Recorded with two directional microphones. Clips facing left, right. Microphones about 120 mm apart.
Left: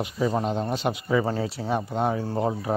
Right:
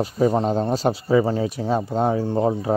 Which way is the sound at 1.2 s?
20° right (ahead or behind).